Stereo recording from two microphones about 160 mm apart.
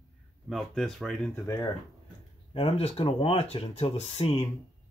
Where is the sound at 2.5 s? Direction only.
40° left (ahead or behind).